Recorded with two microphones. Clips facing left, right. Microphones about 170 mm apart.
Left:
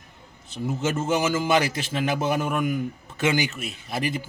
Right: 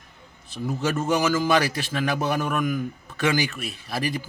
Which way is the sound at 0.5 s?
25° left (ahead or behind).